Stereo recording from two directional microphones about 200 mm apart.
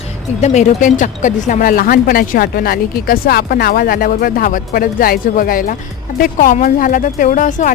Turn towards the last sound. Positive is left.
turn(degrees=40)  # may be behind; listen again after turning